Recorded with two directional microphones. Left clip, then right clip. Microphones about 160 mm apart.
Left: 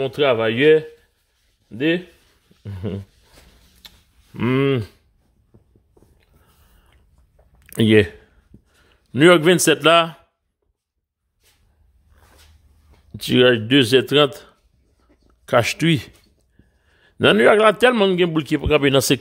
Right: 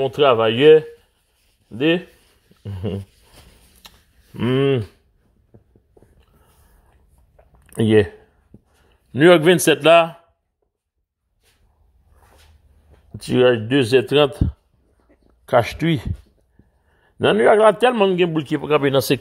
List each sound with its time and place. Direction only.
0.0 s speech: centre (ahead or behind)
4.3 s speech: 15° left (ahead or behind)
7.6 s speech: 25° left (ahead or behind)
9.2 s speech: 5° left (ahead or behind)
13.2 s a man's voice: 25° left (ahead or behind)
15.0 s a sound: 20° left (ahead or behind)
16.9 s a man's voice: 25° left (ahead or behind)